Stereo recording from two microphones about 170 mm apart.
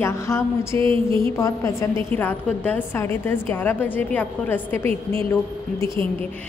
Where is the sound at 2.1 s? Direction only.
10° left (ahead or behind).